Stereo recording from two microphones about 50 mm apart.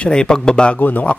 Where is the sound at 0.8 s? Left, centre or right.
Left.